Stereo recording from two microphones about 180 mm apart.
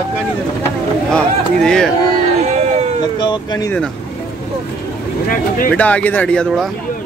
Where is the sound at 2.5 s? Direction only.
40° right (ahead or behind).